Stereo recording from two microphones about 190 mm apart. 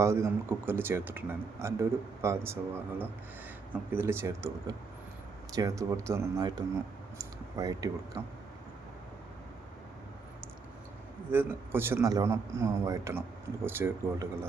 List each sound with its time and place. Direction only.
0.0 s speech: 15° right (ahead or behind)
11.3 s speech: 10° right (ahead or behind)